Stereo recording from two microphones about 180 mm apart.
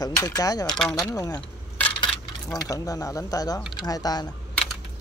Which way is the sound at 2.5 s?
20° left (ahead or behind).